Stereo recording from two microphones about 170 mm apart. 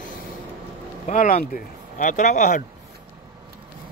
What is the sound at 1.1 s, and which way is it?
Speech, 50° left (ahead or behind).